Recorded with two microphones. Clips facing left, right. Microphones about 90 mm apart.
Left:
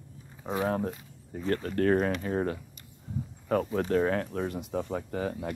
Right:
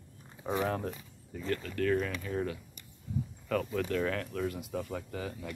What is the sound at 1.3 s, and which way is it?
Speech, 40° left (ahead or behind).